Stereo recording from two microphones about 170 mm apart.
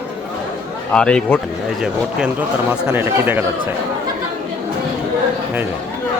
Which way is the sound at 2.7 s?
10° right (ahead or behind).